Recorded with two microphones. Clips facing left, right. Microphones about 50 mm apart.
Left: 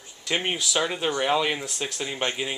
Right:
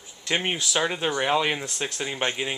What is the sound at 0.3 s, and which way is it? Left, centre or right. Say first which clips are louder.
Speech: even; centre.